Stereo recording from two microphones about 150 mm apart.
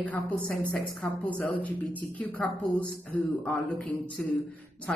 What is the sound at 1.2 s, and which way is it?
A man's voice, 10° left (ahead or behind).